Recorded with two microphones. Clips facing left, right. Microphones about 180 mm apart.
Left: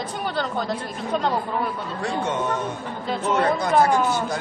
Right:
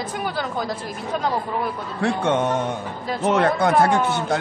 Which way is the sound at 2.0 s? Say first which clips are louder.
Right 6 dB; 65° right (ahead or behind).